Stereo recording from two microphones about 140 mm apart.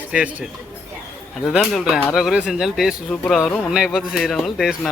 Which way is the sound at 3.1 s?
10° left (ahead or behind).